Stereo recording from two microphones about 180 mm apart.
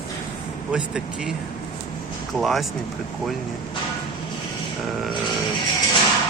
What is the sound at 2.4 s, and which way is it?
Speech, centre (ahead or behind).